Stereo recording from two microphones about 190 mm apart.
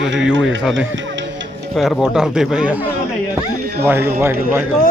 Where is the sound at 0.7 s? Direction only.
75° right (ahead or behind).